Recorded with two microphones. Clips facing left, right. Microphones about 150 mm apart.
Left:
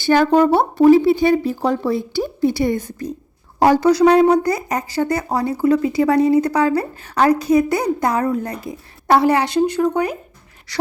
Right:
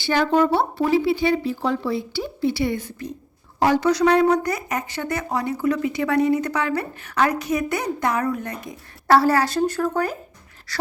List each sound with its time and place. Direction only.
0.0 s a woman's voice: 45° left (ahead or behind)
9.0 s a woman's voice: 20° left (ahead or behind)